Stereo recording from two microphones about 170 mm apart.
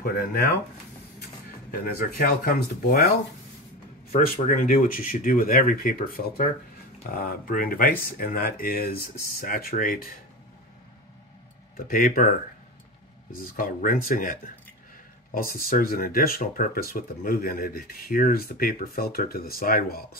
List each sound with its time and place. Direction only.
1.7 s speech: 65° left (ahead or behind)
4.1 s speech: 55° left (ahead or behind)
11.7 s speech: 55° left (ahead or behind)
13.6 s speech: 55° left (ahead or behind)